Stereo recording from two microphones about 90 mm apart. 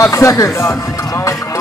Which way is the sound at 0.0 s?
35° left (ahead or behind).